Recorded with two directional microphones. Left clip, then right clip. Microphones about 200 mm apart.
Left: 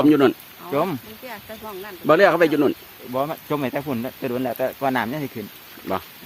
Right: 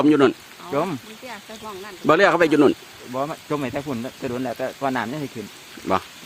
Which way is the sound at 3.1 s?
45° left (ahead or behind).